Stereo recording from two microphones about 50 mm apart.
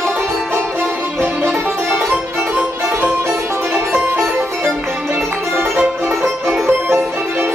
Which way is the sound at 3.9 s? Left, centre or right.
Right.